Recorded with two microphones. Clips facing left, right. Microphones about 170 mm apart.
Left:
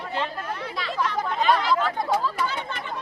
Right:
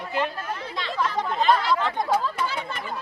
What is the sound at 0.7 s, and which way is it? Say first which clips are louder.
Speech: right 1 dB; centre (ahead or behind).